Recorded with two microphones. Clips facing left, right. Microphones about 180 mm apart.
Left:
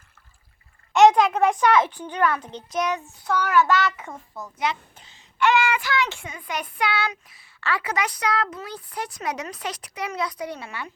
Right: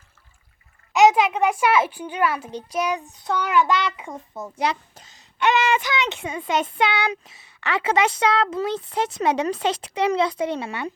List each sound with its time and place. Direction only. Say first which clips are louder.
0.9 s a child's voice: left 1 dB; 5° right (ahead or behind); by 5.2 s 40° right (ahead or behind)
5.4 s child singing: right 1 dB; 20° right (ahead or behind)